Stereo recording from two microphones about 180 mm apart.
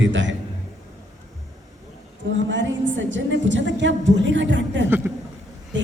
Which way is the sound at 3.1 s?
90° right.